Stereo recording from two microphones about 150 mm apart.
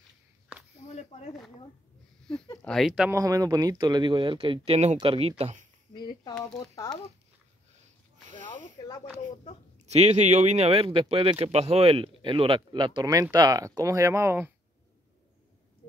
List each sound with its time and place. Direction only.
2.6 s speech: centre (ahead or behind)
3.1 s speech: 20° right (ahead or behind); by 5.3 s 40° right (ahead or behind)
5.4 s speech: 50° right (ahead or behind)
5.9 s snake: 30° left (ahead or behind)
6.6 s speech: 25° left (ahead or behind)
8.8 s speech: 25° left (ahead or behind)
9.8 s speech: 45° right (ahead or behind); by 14.5 s 15° right (ahead or behind)